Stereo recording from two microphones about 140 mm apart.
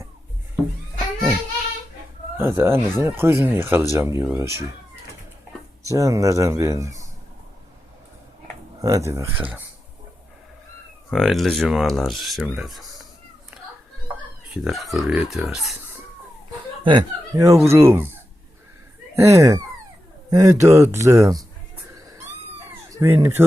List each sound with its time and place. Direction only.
2.4 s speech: 15° right (ahead or behind)
5.8 s speech: 25° right (ahead or behind)
8.8 s speech: 20° right (ahead or behind)
11.1 s speech: centre (ahead or behind)
14.5 s speech: centre (ahead or behind)
16.8 s speech: 30° right (ahead or behind)
22.9 s speech: 20° right (ahead or behind)